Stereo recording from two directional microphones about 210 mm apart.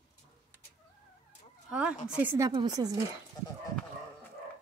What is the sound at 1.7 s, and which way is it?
A woman's voice, 5° right (ahead or behind).